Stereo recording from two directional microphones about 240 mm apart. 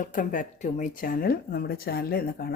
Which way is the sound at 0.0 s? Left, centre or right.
Left.